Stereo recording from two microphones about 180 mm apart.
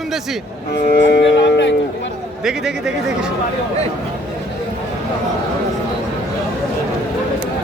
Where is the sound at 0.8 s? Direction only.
65° left (ahead or behind).